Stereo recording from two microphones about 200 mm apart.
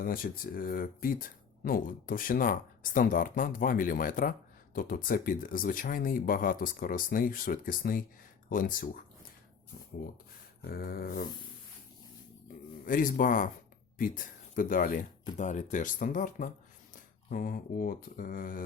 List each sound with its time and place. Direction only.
0.0 s speech: 45° left (ahead or behind)
10.6 s speech: 50° left (ahead or behind)
12.8 s speech: 45° left (ahead or behind)